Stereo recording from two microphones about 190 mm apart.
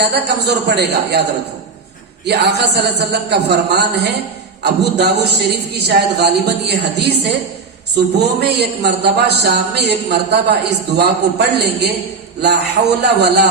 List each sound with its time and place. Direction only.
0.0 s a man's voice: 60° right (ahead or behind)
2.2 s a man's voice: 60° right (ahead or behind)
13.0 s a man's voice: 60° right (ahead or behind)